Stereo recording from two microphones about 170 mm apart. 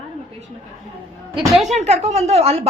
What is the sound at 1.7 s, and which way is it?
Speech, 40° right (ahead or behind).